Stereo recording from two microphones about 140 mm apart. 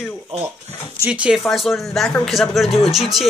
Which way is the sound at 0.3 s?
50° right (ahead or behind).